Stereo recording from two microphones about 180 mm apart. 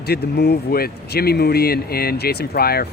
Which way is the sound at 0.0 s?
65° left (ahead or behind).